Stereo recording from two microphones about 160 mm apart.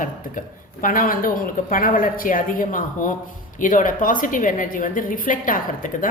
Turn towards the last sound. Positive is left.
turn(degrees=55)  # may be behind; listen again after turning